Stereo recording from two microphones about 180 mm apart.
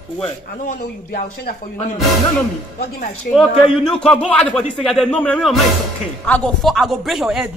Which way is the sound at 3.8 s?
5° left (ahead or behind).